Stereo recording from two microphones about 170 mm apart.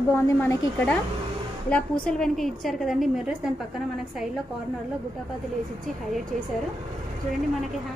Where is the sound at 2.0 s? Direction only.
5° left (ahead or behind).